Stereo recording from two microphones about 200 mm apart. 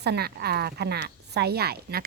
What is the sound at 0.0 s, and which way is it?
Speech, 55° right (ahead or behind).